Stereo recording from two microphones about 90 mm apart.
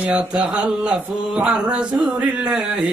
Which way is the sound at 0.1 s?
10° right (ahead or behind).